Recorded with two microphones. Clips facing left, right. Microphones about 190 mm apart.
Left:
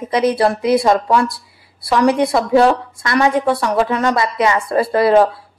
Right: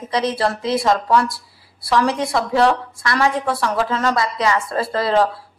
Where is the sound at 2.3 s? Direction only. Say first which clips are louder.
Left 4 dB; 25° left (ahead or behind).